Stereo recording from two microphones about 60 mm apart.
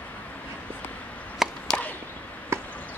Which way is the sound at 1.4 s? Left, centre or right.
Centre.